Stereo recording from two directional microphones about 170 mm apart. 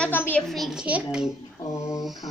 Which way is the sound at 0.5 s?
Centre (ahead or behind).